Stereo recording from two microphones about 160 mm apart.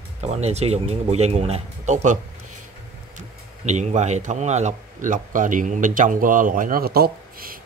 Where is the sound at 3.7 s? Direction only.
45° right (ahead or behind).